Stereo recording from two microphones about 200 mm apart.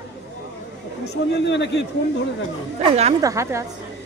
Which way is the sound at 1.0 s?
60° left (ahead or behind).